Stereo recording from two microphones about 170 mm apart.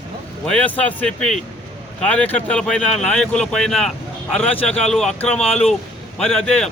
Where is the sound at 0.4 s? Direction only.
10° left (ahead or behind).